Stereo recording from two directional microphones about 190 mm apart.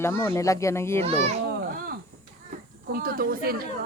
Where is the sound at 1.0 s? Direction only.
35° right (ahead or behind).